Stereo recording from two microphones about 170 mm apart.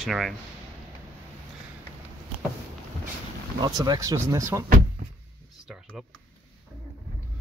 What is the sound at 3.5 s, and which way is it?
Speech, 25° right (ahead or behind).